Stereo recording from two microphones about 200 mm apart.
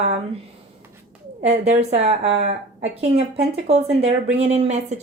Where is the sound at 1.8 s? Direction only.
35° right (ahead or behind).